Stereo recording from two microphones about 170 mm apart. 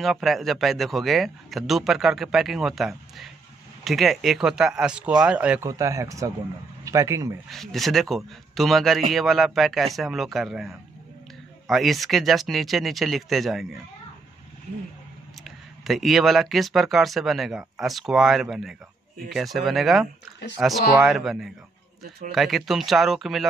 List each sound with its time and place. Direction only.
0.0 s speech: centre (ahead or behind)
5.7 s speech: 20° right (ahead or behind)
7.4 s speech: centre (ahead or behind)
15.4 s speech: centre (ahead or behind)